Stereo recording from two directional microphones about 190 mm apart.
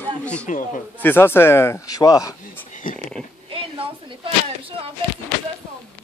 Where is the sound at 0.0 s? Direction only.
5° left (ahead or behind).